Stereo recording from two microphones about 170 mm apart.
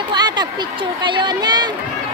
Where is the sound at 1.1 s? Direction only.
25° right (ahead or behind).